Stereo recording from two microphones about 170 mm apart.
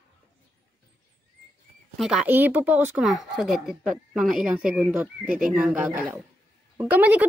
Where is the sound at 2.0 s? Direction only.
5° right (ahead or behind).